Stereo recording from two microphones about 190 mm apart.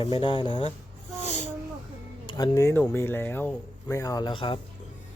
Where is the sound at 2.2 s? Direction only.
25° left (ahead or behind).